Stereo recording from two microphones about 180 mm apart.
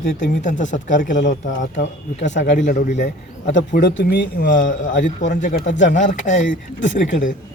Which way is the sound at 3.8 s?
75° left (ahead or behind).